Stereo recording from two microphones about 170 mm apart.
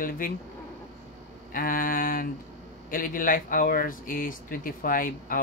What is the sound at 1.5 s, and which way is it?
Speech, 55° left (ahead or behind).